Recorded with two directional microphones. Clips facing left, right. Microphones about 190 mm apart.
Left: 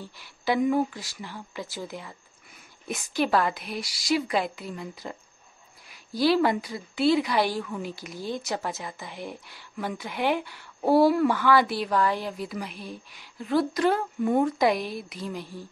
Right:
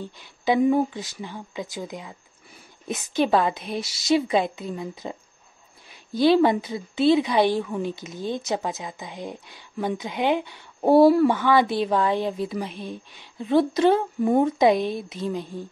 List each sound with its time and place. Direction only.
0.0 s speech: 20° right (ahead or behind)
6.1 s speech: 20° right (ahead or behind)